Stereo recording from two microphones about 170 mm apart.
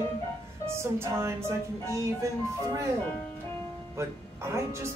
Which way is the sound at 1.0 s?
15° right (ahead or behind).